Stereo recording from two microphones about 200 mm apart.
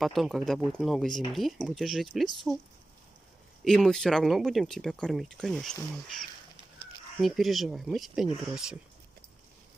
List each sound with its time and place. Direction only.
0.0 s speech: centre (ahead or behind)
3.6 s speech: 5° left (ahead or behind)